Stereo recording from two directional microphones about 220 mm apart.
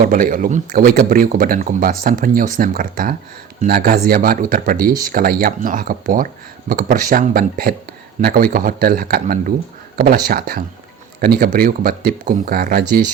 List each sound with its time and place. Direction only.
0.0 s speech: 35° right (ahead or behind)